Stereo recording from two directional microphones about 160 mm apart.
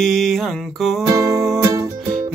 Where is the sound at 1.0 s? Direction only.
20° right (ahead or behind).